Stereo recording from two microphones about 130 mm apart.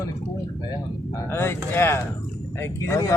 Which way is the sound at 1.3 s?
15° left (ahead or behind).